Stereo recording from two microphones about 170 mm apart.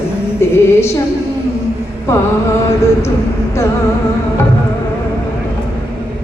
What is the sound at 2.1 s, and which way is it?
Mantra, 15° left (ahead or behind).